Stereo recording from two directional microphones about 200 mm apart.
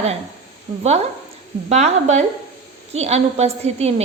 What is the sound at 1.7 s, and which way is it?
A woman's voice, 35° right (ahead or behind).